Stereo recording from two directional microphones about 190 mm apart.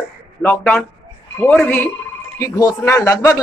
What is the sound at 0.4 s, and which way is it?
Speech, 10° left (ahead or behind).